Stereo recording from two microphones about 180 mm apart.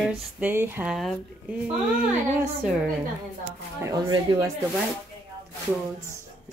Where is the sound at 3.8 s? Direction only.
20° right (ahead or behind).